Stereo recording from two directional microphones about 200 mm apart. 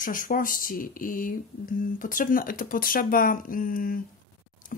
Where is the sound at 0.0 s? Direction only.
40° left (ahead or behind).